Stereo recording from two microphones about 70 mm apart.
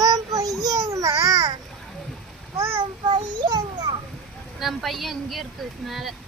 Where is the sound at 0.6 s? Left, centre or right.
Right.